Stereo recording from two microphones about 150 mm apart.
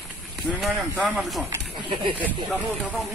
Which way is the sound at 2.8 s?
Centre (ahead or behind).